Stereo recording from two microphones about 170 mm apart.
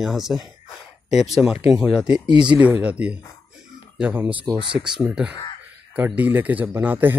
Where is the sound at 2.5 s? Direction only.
10° right (ahead or behind).